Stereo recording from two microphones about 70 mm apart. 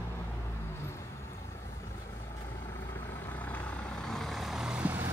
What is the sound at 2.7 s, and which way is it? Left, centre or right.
Vehicle, left.